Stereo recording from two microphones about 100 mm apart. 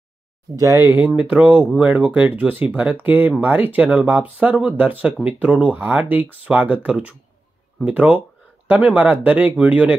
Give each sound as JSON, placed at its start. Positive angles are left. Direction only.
{"t": 0.6, "sound": "speech", "side_deg": -30}
{"t": 0.9, "sound": "speech", "side_deg": -15}